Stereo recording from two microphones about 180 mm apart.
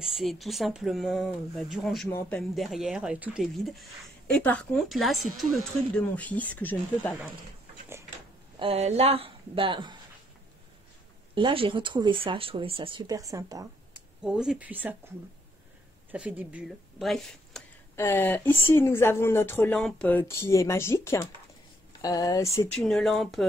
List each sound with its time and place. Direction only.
0.0 s speech: centre (ahead or behind)
8.5 s speech: 35° right (ahead or behind)
11.3 s speech: 30° right (ahead or behind)
14.2 s speech: 5° right (ahead or behind)
16.1 s speech: 10° right (ahead or behind)
17.9 s speech: 15° left (ahead or behind)
22.8 s speech: centre (ahead or behind)